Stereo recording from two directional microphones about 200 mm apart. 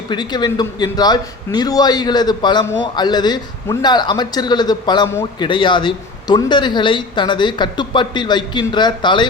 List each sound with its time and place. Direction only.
0.1 s a man's voice: 20° left (ahead or behind)